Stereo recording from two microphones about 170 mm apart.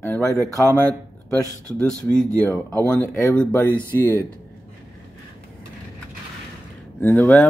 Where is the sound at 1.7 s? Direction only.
5° left (ahead or behind).